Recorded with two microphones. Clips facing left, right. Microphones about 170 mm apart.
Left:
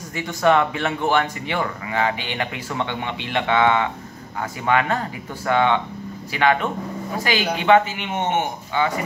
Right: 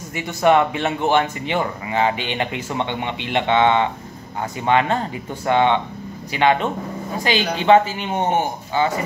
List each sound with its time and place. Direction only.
0.1 s a man's voice: 20° right (ahead or behind)